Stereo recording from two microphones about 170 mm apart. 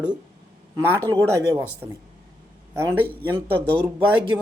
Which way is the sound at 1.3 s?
15° right (ahead or behind).